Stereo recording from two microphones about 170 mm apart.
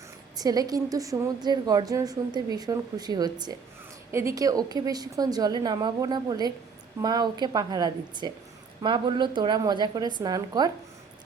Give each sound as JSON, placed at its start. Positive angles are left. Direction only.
{"t": 0.3, "sound": "a woman's voice", "side_deg": -20}